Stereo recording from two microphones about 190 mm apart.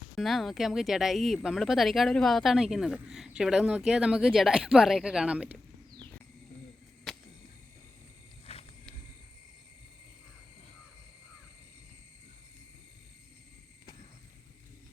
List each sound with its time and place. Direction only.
0.2 s speech: centre (ahead or behind)
8.5 s wild animals: 30° left (ahead or behind)